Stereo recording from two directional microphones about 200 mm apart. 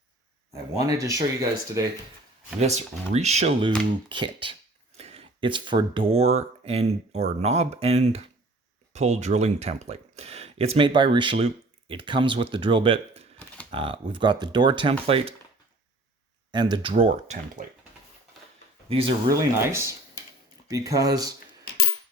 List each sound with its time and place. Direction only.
0.5 s speech: 15° right (ahead or behind)
2.6 s speech: 35° right (ahead or behind)
16.5 s speech: 25° right (ahead or behind)
19.3 s speech: 15° right (ahead or behind)